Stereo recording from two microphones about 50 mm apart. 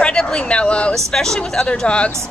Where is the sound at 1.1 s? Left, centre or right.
Centre.